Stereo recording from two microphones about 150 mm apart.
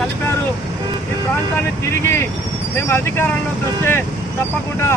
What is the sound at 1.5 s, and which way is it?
Speech, 15° left (ahead or behind).